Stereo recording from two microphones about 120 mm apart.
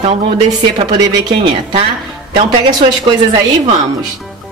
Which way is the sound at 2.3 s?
45° right (ahead or behind).